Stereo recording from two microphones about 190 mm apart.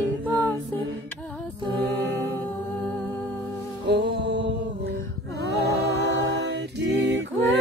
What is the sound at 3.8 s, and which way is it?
Music, 65° right (ahead or behind).